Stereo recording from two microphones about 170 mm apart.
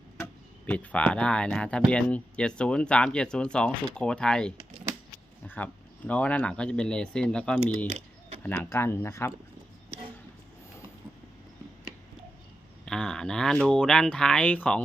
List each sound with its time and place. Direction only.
0.7 s speech: 10° left (ahead or behind)
7.9 s a sound: 40° right (ahead or behind)
8.4 s speech: 10° left (ahead or behind)
12.8 s speech: 5° left (ahead or behind)